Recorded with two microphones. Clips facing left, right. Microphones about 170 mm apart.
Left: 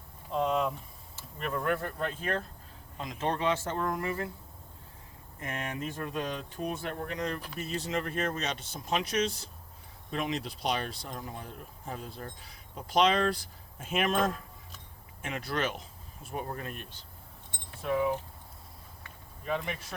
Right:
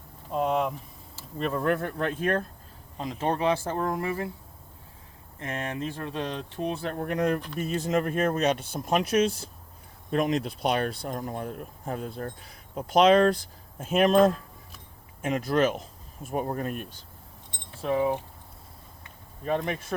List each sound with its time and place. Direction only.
1.4 s speech: 30° right (ahead or behind)
1.8 s speech: 70° right (ahead or behind)
3.0 s speech: 30° right (ahead or behind)
5.4 s speech: 30° right (ahead or behind)
7.1 s speech: 55° right (ahead or behind)
17.8 s speech: 30° right (ahead or behind)
19.5 s speech: 45° right (ahead or behind)